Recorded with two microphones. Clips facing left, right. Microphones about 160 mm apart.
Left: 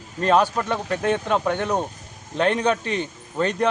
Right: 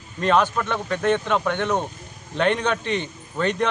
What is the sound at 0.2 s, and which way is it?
Speech, 40° left (ahead or behind).